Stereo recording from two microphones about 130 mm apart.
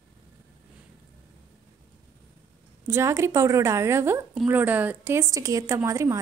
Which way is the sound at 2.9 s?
20° right (ahead or behind).